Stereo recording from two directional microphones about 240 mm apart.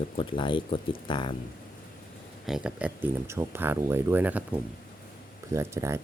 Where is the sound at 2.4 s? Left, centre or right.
Centre.